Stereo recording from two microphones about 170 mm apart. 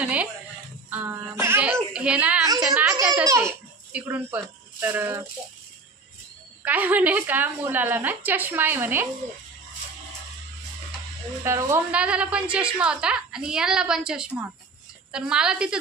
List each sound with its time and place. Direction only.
0.0 s a sound: 10° right (ahead or behind)
3.3 s a child's voice: 15° right (ahead or behind)
6.6 s a woman's voice: 10° right (ahead or behind)
11.4 s a woman's voice: 15° right (ahead or behind)